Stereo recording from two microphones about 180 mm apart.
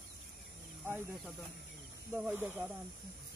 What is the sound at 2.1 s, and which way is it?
Speech, 10° right (ahead or behind).